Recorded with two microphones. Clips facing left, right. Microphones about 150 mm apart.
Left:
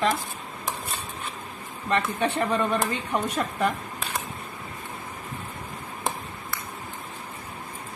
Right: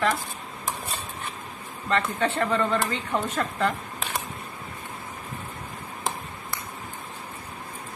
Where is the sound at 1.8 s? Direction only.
15° left (ahead or behind).